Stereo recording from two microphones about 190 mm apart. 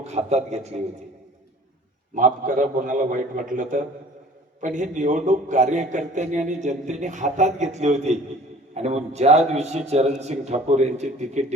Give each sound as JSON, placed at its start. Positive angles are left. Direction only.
{"t": 0.0, "sound": "a man's voice", "side_deg": -35}
{"t": 2.1, "sound": "a man's voice", "side_deg": -45}